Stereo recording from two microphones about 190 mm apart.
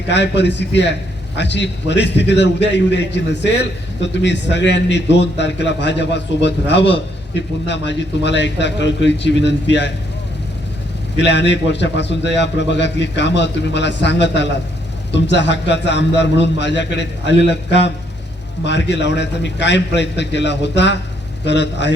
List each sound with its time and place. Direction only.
0.1 s a man's voice: 65° left (ahead or behind)
11.2 s a man's voice: 65° left (ahead or behind)